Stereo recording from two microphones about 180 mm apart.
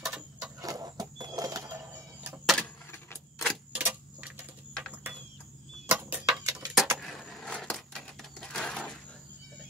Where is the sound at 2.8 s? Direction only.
15° left (ahead or behind).